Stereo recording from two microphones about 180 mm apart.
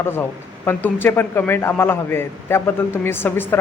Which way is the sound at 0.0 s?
10° left (ahead or behind).